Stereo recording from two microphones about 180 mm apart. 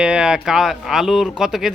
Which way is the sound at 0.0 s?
5° right (ahead or behind).